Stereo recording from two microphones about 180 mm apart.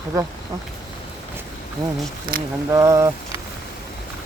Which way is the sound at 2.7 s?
15° right (ahead or behind).